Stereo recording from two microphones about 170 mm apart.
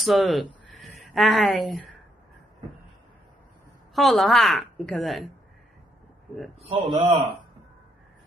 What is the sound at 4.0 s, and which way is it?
A woman's voice, centre (ahead or behind).